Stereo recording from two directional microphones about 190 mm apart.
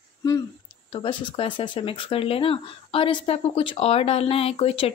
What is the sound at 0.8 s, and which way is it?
Speech, 25° left (ahead or behind).